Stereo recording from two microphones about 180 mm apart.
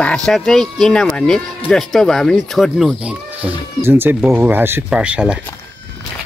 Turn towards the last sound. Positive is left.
turn(degrees=-5)  # may be behind; listen again after turning